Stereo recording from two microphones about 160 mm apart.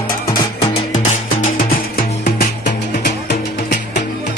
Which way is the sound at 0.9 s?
45° left (ahead or behind).